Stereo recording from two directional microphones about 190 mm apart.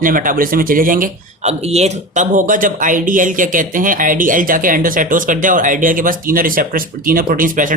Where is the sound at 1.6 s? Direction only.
35° right (ahead or behind).